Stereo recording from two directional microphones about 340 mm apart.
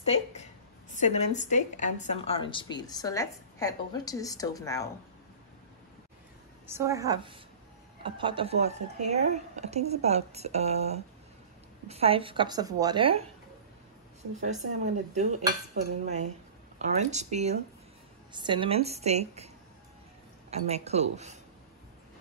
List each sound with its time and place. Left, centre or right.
0.0 s a sound: centre
0.9 s a woman's voice: left
6.7 s a woman's voice: centre
14.4 s a woman's voice: right